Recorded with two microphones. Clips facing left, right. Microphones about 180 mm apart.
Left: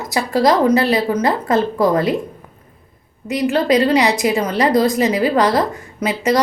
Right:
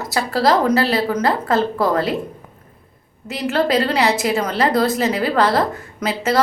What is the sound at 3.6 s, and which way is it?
A woman's voice, 15° left (ahead or behind).